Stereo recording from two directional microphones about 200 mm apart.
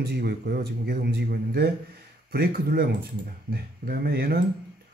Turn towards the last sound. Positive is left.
turn(degrees=-50)  # may be behind; listen again after turning